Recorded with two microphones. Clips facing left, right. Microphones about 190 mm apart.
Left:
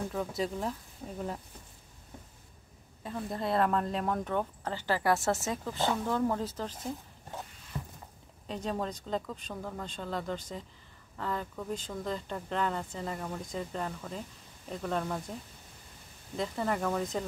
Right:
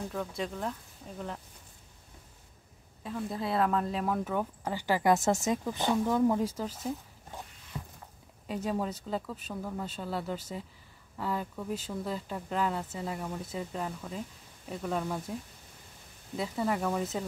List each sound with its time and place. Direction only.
0.4 s speech: 5° left (ahead or behind)
1.0 s speech: 45° left (ahead or behind)
3.0 s speech: centre (ahead or behind)
7.7 s a sound: 5° left (ahead or behind)
8.5 s speech: 10° right (ahead or behind)
16.3 s speech: 5° right (ahead or behind)